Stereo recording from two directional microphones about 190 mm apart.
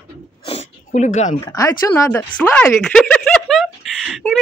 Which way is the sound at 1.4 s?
15° left (ahead or behind).